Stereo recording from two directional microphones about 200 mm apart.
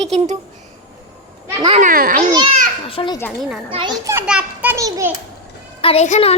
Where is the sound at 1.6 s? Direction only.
30° right (ahead or behind).